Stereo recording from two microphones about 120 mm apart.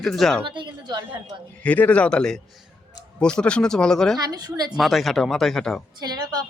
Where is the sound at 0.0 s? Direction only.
Centre (ahead or behind).